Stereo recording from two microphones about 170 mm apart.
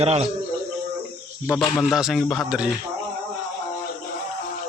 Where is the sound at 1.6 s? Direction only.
Centre (ahead or behind).